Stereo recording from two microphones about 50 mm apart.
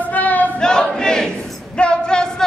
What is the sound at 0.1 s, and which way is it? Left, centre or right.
Battle cry, left.